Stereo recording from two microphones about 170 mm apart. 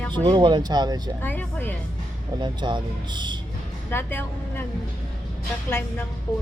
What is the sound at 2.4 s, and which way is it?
Speech, 25° right (ahead or behind).